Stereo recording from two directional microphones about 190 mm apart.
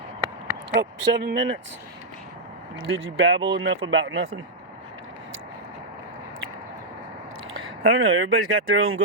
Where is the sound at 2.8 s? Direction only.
90° right.